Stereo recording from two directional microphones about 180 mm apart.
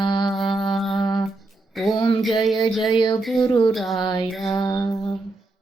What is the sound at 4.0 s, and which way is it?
Music, 25° left (ahead or behind).